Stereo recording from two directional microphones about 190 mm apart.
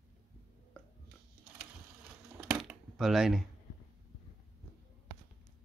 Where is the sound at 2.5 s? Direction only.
5° right (ahead or behind).